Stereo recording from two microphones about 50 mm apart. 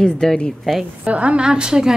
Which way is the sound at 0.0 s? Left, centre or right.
Centre.